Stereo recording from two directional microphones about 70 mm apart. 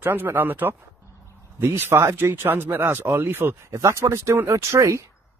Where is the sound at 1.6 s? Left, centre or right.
Right.